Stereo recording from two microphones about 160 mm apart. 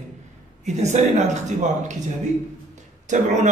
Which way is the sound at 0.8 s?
45° right (ahead or behind).